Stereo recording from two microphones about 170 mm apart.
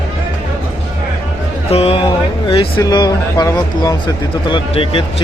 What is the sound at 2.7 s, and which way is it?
Speech, 25° left (ahead or behind).